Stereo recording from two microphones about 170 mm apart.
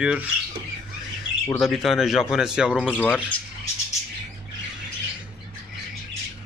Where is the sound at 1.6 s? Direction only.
Centre (ahead or behind).